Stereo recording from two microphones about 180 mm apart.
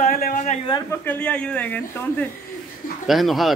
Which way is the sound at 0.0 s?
50° left (ahead or behind).